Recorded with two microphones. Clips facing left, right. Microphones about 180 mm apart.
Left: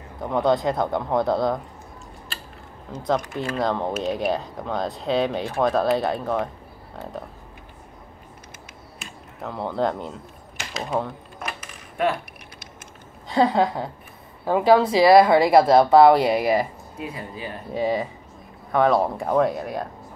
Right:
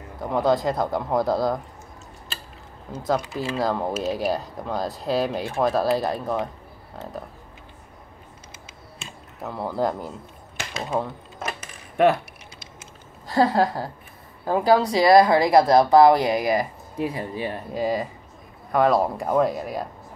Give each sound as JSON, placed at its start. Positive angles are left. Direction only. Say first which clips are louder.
{"t": 0.2, "sound": "speech", "louder": "even", "side_deg": 0}
{"t": 2.9, "sound": "speech", "louder": "even", "side_deg": -5}
{"t": 9.4, "sound": "speech", "louder": "left 1 dB", "side_deg": 0}
{"t": 13.3, "sound": "speech", "louder": "even", "side_deg": 0}
{"t": 17.1, "sound": "speech", "louder": "right 5 dB", "side_deg": -35}
{"t": 17.7, "sound": "speech", "louder": "left 2 dB", "side_deg": 0}